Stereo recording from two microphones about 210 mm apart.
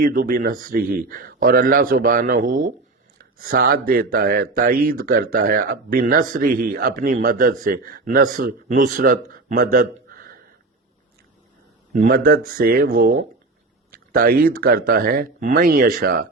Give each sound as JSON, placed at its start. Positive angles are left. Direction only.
{"t": 0.0, "sound": "speech", "side_deg": -40}
{"t": 11.9, "sound": "speech", "side_deg": -45}